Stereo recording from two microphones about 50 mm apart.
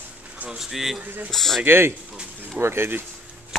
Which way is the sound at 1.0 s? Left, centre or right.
Right.